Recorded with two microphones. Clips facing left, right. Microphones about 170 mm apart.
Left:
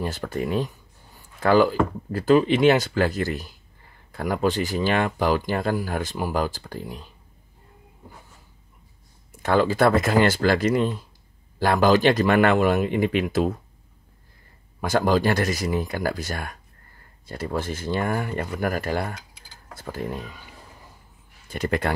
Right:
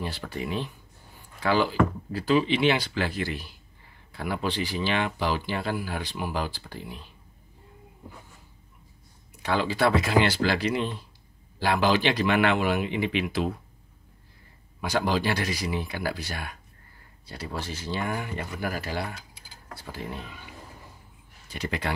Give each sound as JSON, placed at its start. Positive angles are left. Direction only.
{"t": 0.0, "sound": "speech", "side_deg": 45}
{"t": 9.3, "sound": "speech", "side_deg": 50}
{"t": 14.8, "sound": "speech", "side_deg": 45}
{"t": 21.5, "sound": "speech", "side_deg": 50}